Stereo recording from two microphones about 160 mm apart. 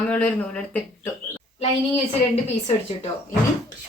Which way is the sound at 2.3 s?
40° left (ahead or behind).